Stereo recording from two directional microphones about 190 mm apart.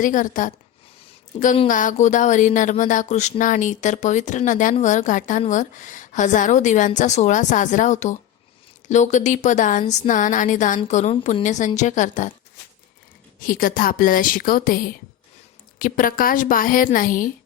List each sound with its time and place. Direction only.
0.0 s a woman's voice: 45° left (ahead or behind)
1.6 s a woman's voice: 45° left (ahead or behind)
13.4 s a woman's voice: 45° left (ahead or behind)